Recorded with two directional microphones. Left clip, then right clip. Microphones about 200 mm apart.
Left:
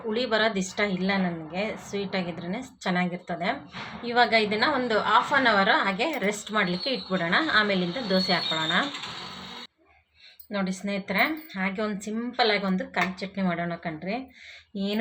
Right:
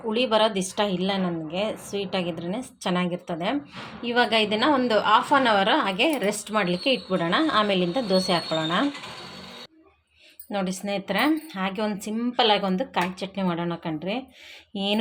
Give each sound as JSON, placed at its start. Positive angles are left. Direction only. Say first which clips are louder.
{"t": 0.1, "sound": "a woman's voice", "louder": "right 3 dB", "side_deg": -25}
{"t": 10.5, "sound": "a woman's voice", "louder": "right 3 dB", "side_deg": -40}